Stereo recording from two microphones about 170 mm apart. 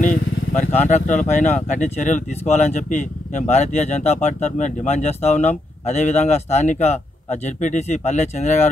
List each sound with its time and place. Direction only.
0.0 s vehicle: 50° left (ahead or behind)
0.8 s speech: 45° left (ahead or behind)